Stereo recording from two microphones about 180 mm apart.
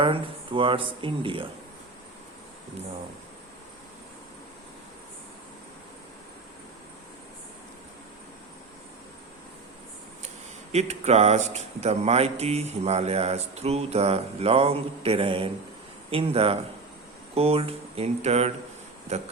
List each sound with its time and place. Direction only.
0.0 s speech: 30° right (ahead or behind)
10.2 s speech: 40° right (ahead or behind)